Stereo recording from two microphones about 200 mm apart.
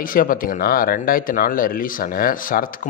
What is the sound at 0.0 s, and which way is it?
Speech, 45° left (ahead or behind).